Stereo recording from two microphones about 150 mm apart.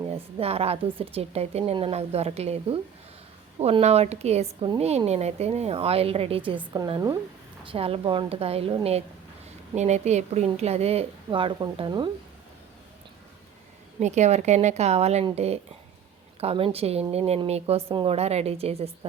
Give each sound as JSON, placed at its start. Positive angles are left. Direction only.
{"t": 0.1, "sound": "a woman's voice", "side_deg": -40}
{"t": 6.7, "sound": "speech", "side_deg": -25}
{"t": 7.6, "sound": "a woman's voice", "side_deg": -35}
{"t": 14.0, "sound": "a woman's voice", "side_deg": -50}